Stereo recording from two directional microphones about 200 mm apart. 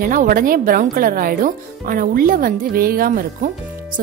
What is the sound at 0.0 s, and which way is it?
Speech, 45° right (ahead or behind).